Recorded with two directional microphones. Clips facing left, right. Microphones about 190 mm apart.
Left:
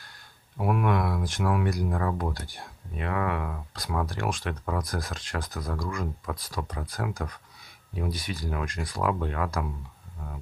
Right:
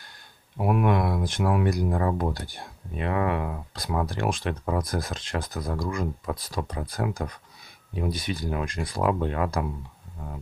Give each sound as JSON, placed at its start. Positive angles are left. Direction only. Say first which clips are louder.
{"t": 0.6, "sound": "speech", "louder": "right 3 dB", "side_deg": -20}